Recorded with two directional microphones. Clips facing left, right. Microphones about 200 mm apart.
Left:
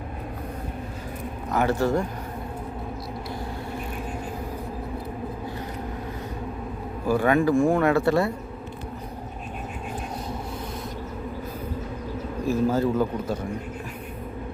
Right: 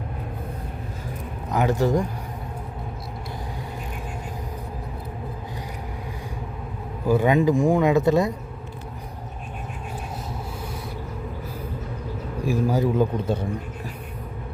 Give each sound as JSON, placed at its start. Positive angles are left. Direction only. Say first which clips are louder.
{"t": 1.5, "sound": "speech", "louder": "right 1 dB", "side_deg": -15}
{"t": 7.1, "sound": "speech", "louder": "right 1 dB", "side_deg": -20}
{"t": 12.5, "sound": "speech", "louder": "even", "side_deg": -15}